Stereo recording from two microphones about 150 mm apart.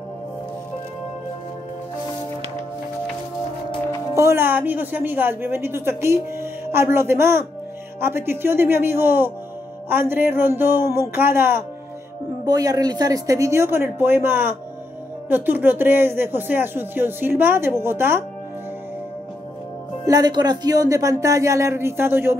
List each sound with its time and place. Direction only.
4.1 s a woman's voice: 20° right (ahead or behind)
20.1 s speech: 25° right (ahead or behind)